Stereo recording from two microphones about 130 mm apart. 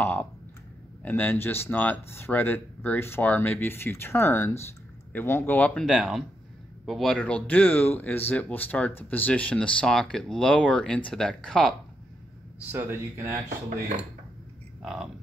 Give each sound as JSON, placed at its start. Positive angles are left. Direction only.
{"t": 0.0, "sound": "speech", "side_deg": 10}
{"t": 5.9, "sound": "speech", "side_deg": 0}
{"t": 12.5, "sound": "speech", "side_deg": -20}
{"t": 14.8, "sound": "speech", "side_deg": 0}